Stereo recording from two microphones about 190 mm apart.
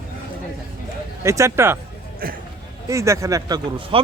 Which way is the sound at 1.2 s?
15° right (ahead or behind).